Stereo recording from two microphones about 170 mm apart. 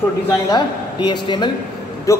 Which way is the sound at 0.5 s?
25° left (ahead or behind).